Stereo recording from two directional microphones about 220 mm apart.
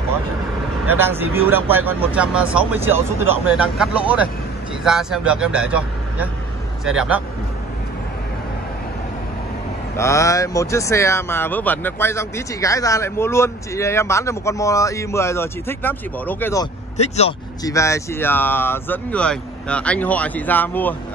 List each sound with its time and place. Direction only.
0.8 s speech: 10° right (ahead or behind)
9.9 s speech: 15° left (ahead or behind)
16.9 s speech: 30° left (ahead or behind)
17.6 s speech: 15° left (ahead or behind)